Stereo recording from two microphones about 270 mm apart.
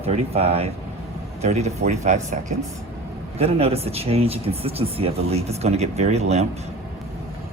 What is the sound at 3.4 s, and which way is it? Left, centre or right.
Speech, right.